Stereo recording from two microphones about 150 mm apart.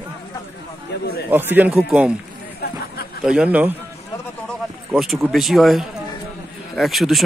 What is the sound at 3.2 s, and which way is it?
Speech, 5° right (ahead or behind).